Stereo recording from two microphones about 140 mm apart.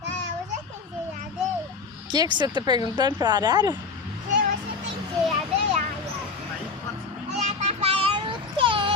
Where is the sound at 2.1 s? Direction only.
35° right (ahead or behind).